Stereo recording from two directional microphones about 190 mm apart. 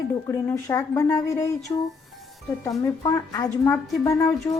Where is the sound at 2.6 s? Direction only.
15° left (ahead or behind).